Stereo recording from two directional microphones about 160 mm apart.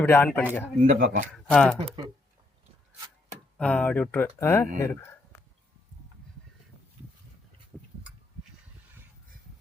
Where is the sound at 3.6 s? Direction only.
10° left (ahead or behind).